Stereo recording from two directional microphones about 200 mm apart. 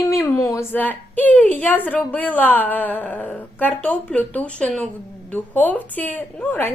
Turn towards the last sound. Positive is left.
turn(degrees=10)  # may be behind; listen again after turning